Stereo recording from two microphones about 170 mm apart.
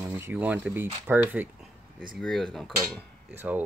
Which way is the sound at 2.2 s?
5° left (ahead or behind).